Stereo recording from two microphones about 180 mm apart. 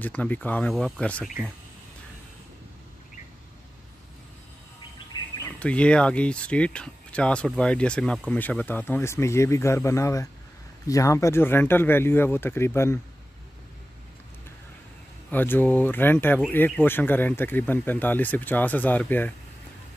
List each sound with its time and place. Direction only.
0.0 s speech: 10° left (ahead or behind)
5.1 s bird: 25° left (ahead or behind)
5.6 s speech: 5° left (ahead or behind)
15.3 s speech: 10° left (ahead or behind)